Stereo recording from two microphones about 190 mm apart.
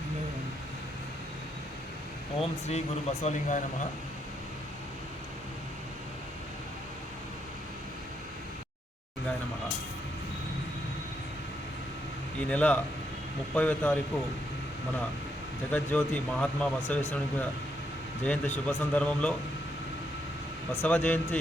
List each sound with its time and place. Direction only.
2.4 s speech: 35° left (ahead or behind)
12.5 s speech: 5° left (ahead or behind)
15.7 s speech: 10° left (ahead or behind)
18.3 s speech: 10° left (ahead or behind)
20.8 s speech: 10° left (ahead or behind)